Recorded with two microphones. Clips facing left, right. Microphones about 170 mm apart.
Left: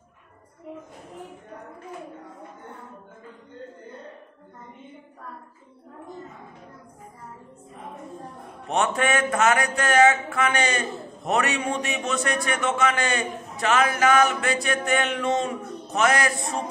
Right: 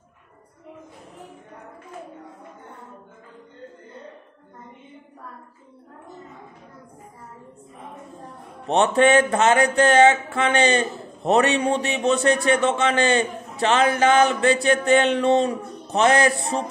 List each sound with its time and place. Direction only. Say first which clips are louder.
8.6 s a man's voice: right 6 dB; 30° right (ahead or behind)